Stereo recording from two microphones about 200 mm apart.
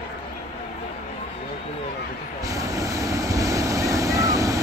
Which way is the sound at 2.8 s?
15° right (ahead or behind).